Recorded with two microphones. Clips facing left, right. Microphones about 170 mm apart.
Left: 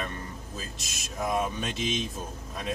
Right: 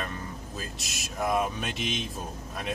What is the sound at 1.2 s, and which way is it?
Speech, 5° right (ahead or behind).